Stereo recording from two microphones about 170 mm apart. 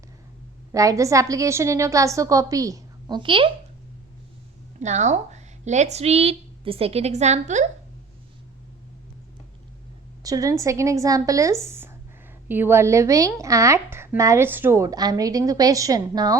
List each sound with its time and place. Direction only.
0.7 s a woman's voice: 20° right (ahead or behind)
4.8 s speech: 45° right (ahead or behind)
10.2 s a woman's voice: 20° right (ahead or behind)